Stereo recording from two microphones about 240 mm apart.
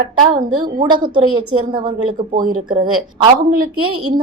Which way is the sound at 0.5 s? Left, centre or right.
Centre.